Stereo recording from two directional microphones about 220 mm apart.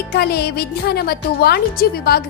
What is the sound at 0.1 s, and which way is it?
Speech, 45° left (ahead or behind).